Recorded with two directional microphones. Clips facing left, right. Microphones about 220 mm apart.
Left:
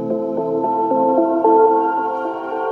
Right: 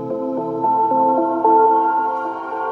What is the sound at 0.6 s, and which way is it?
Music, 30° left (ahead or behind).